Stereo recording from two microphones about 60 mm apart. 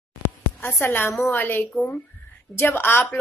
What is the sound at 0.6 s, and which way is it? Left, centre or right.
A woman's voice, left.